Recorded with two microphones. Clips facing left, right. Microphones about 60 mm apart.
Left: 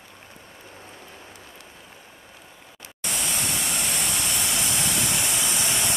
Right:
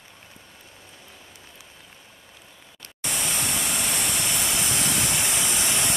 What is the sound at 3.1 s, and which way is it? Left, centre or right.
Pink noise, centre.